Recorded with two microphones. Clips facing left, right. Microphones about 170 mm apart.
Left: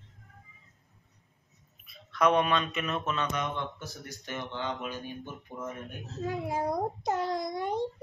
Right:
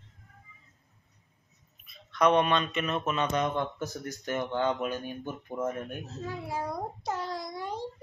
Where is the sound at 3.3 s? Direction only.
45° right (ahead or behind).